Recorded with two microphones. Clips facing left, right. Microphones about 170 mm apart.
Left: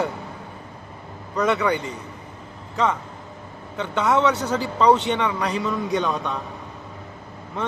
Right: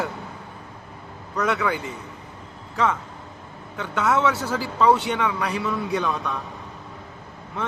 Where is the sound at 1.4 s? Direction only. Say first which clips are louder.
Left 3 dB; centre (ahead or behind).